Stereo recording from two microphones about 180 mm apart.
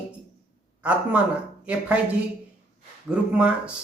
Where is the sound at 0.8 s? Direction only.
5° right (ahead or behind).